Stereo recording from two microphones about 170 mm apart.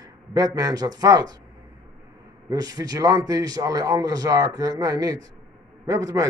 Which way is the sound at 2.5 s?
20° right (ahead or behind).